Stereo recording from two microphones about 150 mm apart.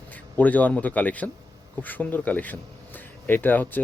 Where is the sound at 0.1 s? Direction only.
10° left (ahead or behind).